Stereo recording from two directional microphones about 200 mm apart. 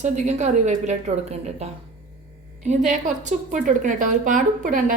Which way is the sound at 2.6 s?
40° right (ahead or behind).